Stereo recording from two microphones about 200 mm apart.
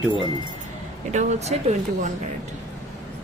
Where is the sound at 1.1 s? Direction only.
35° right (ahead or behind).